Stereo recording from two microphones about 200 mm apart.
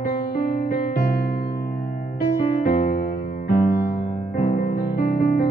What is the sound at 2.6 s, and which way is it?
Music, 40° left (ahead or behind).